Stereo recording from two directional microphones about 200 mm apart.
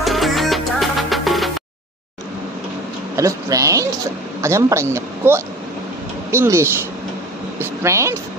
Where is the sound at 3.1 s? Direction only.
15° right (ahead or behind).